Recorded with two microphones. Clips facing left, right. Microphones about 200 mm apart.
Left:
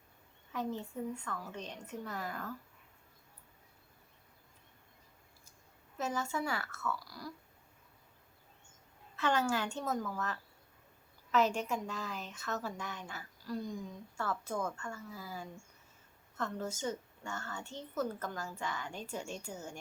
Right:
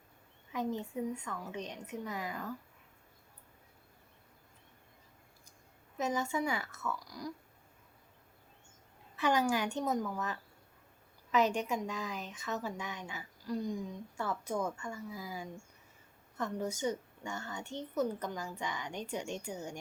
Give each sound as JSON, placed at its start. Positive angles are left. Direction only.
{"t": 0.5, "sound": "a woman's voice", "side_deg": -15}
{"t": 6.0, "sound": "a woman's voice", "side_deg": -15}
{"t": 9.1, "sound": "a woman's voice", "side_deg": -15}